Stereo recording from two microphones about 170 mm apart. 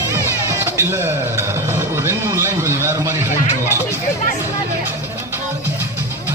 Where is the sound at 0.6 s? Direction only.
15° right (ahead or behind).